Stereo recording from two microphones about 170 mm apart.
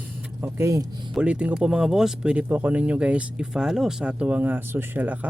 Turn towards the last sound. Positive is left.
turn(degrees=-10)  # may be behind; listen again after turning